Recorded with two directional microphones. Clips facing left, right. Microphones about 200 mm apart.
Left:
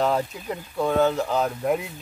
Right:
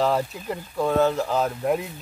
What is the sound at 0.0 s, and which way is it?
Speech, centre (ahead or behind).